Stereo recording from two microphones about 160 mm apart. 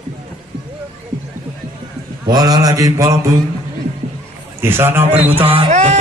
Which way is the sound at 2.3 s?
25° right (ahead or behind).